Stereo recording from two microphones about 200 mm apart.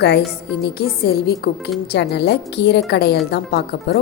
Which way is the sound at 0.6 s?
50° left (ahead or behind).